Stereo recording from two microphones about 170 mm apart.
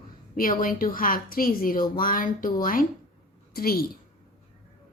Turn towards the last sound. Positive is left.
turn(degrees=60)  # may be behind; listen again after turning